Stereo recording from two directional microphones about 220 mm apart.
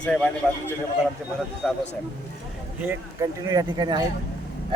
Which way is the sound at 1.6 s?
10° right (ahead or behind).